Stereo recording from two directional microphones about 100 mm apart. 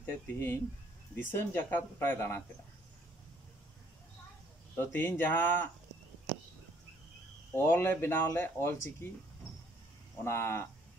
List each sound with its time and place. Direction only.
0.0 s speech: 20° left (ahead or behind)
4.7 s speech: 20° left (ahead or behind)
7.5 s speech: 25° left (ahead or behind)
10.2 s speech: 25° left (ahead or behind)